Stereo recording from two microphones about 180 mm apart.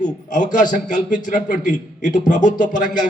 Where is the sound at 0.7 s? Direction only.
45° left (ahead or behind).